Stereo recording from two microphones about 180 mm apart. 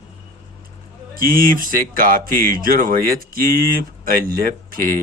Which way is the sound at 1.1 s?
50° right (ahead or behind).